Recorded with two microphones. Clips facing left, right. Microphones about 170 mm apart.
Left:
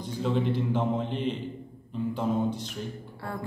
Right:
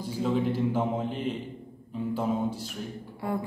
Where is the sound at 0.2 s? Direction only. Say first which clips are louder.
Right 1 dB; 5° right (ahead or behind).